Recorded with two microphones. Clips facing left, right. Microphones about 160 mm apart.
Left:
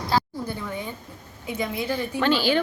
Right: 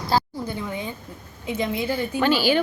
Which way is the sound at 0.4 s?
15° right (ahead or behind).